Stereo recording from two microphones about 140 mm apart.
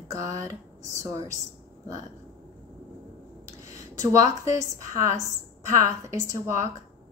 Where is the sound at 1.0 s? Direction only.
25° right (ahead or behind).